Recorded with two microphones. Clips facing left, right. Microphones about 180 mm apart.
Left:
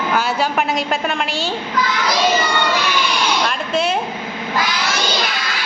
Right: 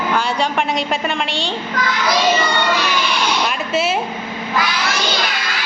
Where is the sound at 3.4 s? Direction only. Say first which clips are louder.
Even; 5° right (ahead or behind).